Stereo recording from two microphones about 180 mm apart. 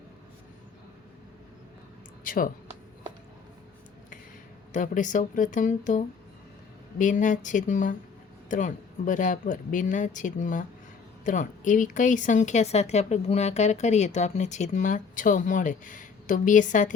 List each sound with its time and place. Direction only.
2.2 s speech: 50° left (ahead or behind)
4.7 s speech: 45° left (ahead or behind)